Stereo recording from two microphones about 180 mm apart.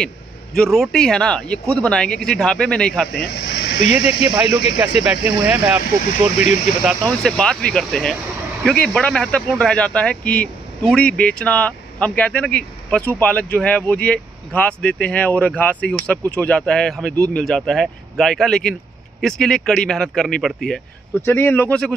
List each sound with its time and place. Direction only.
0.6 s speech: 5° left (ahead or behind)
3.2 s a sound: 70° left (ahead or behind)
3.9 s speech: 10° right (ahead or behind)
6.3 s speech: 40° left (ahead or behind)
7.2 s speech: 5° left (ahead or behind)